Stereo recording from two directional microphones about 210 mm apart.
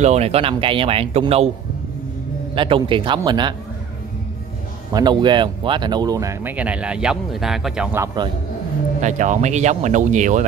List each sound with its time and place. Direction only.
0.0 s speech: 30° right (ahead or behind)
2.5 s speech: 25° right (ahead or behind)
4.9 s speech: 20° right (ahead or behind)
9.0 s speech: 35° right (ahead or behind)